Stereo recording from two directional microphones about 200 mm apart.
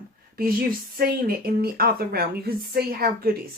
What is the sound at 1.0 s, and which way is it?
A woman's voice, 50° right (ahead or behind).